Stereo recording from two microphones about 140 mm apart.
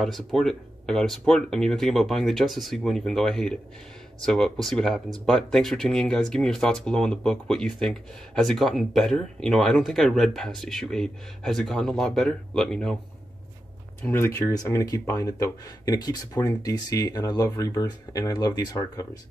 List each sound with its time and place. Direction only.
0.0 s speech: centre (ahead or behind)
14.0 s speech: 20° left (ahead or behind)